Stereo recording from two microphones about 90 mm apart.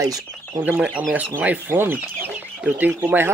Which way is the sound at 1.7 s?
25° right (ahead or behind).